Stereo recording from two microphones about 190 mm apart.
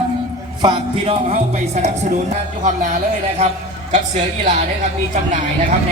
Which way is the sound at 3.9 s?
40° right (ahead or behind).